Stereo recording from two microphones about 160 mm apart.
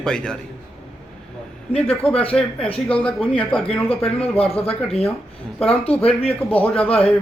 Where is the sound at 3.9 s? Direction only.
40° left (ahead or behind).